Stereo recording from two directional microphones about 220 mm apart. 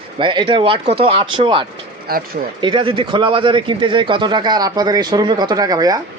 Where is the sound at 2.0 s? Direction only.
40° right (ahead or behind).